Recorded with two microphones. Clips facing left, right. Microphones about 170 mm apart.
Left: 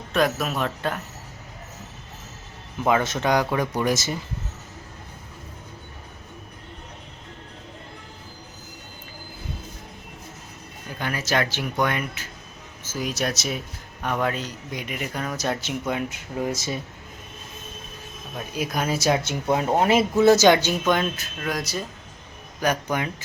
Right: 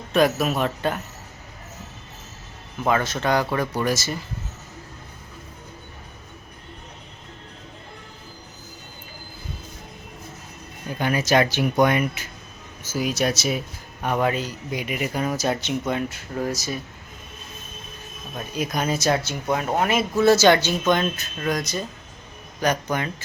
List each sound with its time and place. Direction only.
0.1 s speech: 5° right (ahead or behind)
3.0 s speech: 20° left (ahead or behind)
11.0 s speech: 15° right (ahead or behind); by 15.8 s centre (ahead or behind)
15.9 s speech: 15° left (ahead or behind)
18.3 s speech: 5° left (ahead or behind)
19.2 s speech: 25° left (ahead or behind)